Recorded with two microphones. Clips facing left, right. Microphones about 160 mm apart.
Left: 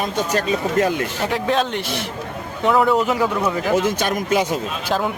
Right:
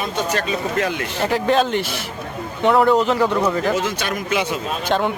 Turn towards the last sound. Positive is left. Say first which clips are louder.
# right 2 dB
turn(degrees=0)  # may be behind; listen again after turning